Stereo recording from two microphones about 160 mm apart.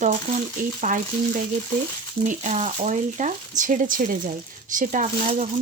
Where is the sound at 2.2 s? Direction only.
50° right (ahead or behind).